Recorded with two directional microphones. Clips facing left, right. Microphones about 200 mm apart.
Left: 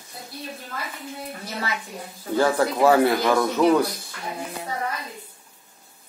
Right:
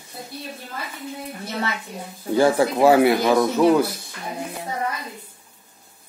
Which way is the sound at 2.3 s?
15° right (ahead or behind).